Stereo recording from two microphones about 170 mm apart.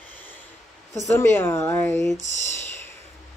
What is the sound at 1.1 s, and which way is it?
Speech, 15° left (ahead or behind).